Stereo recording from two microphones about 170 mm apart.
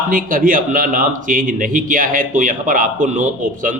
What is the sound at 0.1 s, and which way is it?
Speech, 55° right (ahead or behind).